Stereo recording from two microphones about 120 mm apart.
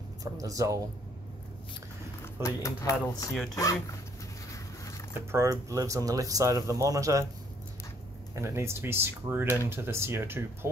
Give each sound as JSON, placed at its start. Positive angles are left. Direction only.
{"t": 0.2, "sound": "speech", "side_deg": -30}
{"t": 2.4, "sound": "speech", "side_deg": 25}
{"t": 5.1, "sound": "speech", "side_deg": -20}
{"t": 8.4, "sound": "speech", "side_deg": -20}